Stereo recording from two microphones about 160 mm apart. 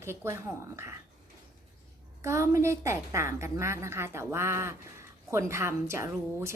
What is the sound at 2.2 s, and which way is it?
A woman's voice, 20° right (ahead or behind).